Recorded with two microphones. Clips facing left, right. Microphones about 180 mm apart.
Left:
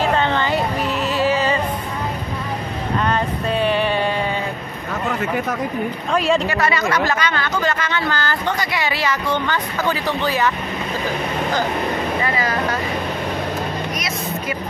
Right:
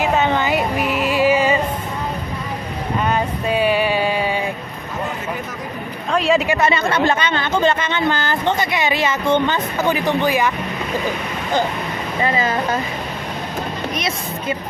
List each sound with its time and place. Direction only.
0.0 s music: 10° right (ahead or behind)
3.1 s a sound: 10° right (ahead or behind)
6.1 s a woman's voice: centre (ahead or behind)
6.4 s speech: 20° right (ahead or behind)